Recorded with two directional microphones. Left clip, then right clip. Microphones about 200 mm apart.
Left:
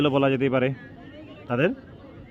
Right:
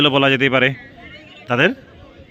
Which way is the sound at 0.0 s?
5° right (ahead or behind).